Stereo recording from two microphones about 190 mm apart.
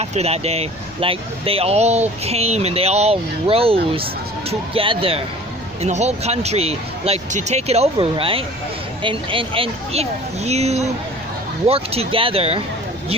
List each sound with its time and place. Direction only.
0.0 s speech: 35° right (ahead or behind)